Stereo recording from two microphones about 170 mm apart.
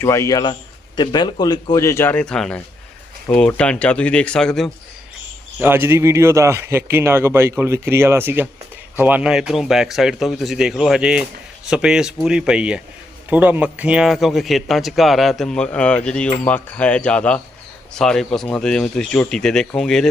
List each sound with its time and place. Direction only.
0.0 s a man's voice: 15° left (ahead or behind)
5.5 s a man's voice: 10° right (ahead or behind); by 20.1 s 5° left (ahead or behind)